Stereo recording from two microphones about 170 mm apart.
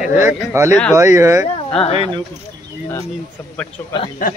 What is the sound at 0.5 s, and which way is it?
Speech, 15° right (ahead or behind).